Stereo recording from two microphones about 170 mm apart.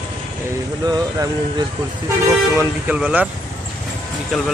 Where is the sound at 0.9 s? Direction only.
25° right (ahead or behind).